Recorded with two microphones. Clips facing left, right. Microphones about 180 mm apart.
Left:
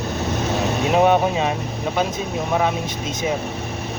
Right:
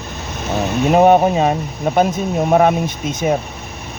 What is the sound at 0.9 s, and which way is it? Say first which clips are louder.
Speech: right 6 dB; 45° right (ahead or behind).